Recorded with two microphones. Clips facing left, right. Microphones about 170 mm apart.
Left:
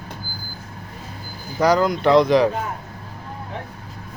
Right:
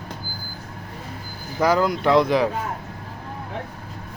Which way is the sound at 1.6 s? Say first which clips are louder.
Left 2 dB; 5° right (ahead or behind).